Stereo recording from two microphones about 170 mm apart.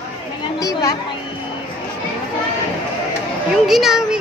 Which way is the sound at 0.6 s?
20° left (ahead or behind).